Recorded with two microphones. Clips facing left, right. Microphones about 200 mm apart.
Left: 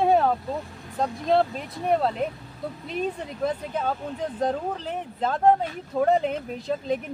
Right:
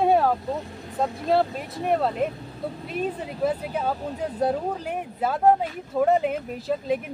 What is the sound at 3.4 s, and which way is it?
Speech, 10° right (ahead or behind).